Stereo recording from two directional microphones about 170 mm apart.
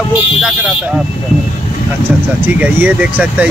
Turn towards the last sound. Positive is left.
turn(degrees=-10)  # may be behind; listen again after turning